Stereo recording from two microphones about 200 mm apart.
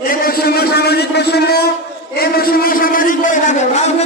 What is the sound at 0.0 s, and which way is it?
A man's voice, 45° left (ahead or behind).